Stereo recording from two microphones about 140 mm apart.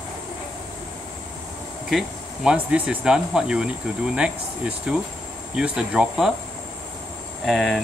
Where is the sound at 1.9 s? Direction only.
5° right (ahead or behind).